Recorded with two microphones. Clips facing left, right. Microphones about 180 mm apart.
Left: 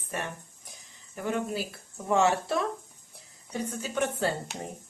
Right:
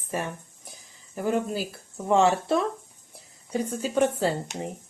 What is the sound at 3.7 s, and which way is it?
Speech, 40° right (ahead or behind).